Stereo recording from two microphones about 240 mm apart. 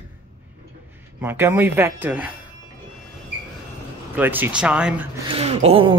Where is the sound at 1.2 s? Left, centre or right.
Centre.